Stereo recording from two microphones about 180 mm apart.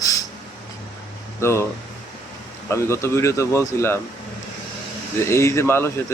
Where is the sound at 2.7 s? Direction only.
15° left (ahead or behind).